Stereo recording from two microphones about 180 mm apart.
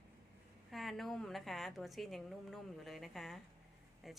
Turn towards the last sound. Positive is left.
turn(degrees=0)  # may be behind; listen again after turning